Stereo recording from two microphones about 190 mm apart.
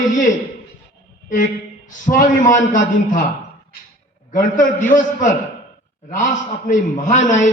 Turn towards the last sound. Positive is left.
turn(degrees=40)  # may be behind; listen again after turning